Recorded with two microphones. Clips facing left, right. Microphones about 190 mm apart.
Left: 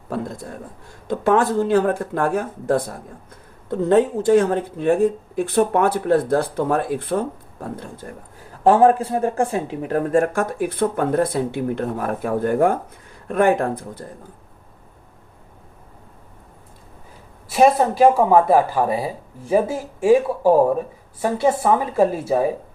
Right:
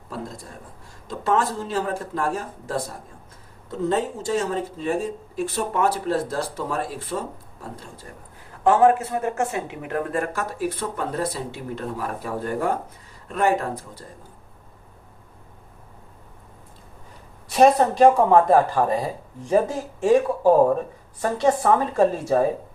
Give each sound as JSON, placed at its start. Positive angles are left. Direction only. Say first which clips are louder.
{"t": 1.0, "sound": "speech", "louder": "left 5 dB", "side_deg": 65}
{"t": 8.6, "sound": "speech", "louder": "left 3 dB", "side_deg": 35}
{"t": 17.5, "sound": "speech", "louder": "left 1 dB", "side_deg": 5}